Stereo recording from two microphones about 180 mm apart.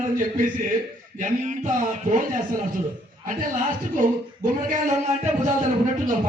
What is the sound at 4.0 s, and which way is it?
Speech, 45° right (ahead or behind).